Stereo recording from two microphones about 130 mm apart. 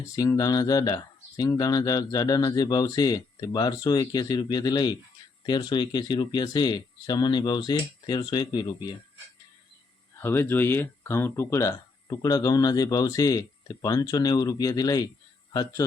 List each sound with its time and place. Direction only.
0.2 s speech: 30° left (ahead or behind)
10.2 s speech: 15° left (ahead or behind)